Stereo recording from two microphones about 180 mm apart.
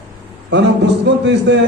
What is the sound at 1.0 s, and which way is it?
Speech, 75° right (ahead or behind).